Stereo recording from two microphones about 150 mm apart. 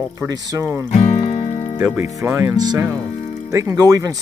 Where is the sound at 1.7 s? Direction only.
15° right (ahead or behind).